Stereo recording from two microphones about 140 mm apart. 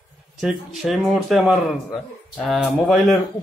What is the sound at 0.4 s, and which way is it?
Speech, 5° right (ahead or behind).